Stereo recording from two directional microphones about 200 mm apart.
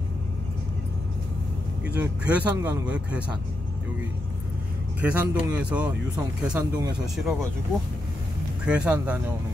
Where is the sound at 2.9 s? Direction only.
5° right (ahead or behind).